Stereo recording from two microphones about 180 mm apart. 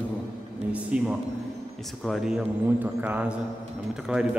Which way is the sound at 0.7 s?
5° right (ahead or behind).